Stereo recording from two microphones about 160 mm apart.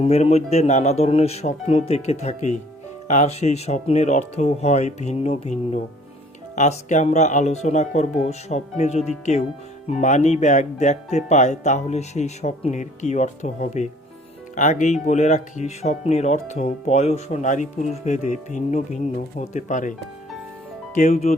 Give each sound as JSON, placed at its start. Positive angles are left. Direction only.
{"t": 0.0, "sound": "speech", "side_deg": 40}